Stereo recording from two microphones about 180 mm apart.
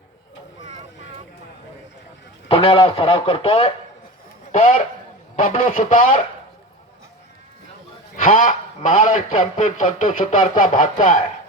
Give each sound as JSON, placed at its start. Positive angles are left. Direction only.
{"t": 2.5, "sound": "speech", "side_deg": 30}
{"t": 5.4, "sound": "a man's voice", "side_deg": 45}
{"t": 8.1, "sound": "a man's voice", "side_deg": 45}